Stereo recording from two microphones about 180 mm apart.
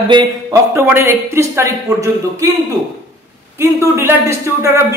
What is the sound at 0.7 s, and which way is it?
Speech, 15° right (ahead or behind).